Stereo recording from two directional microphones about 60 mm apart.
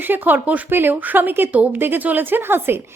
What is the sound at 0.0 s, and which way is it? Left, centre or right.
A woman's voice, right.